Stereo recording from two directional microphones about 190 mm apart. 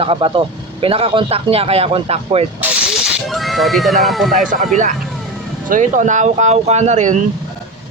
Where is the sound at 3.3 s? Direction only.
Centre (ahead or behind).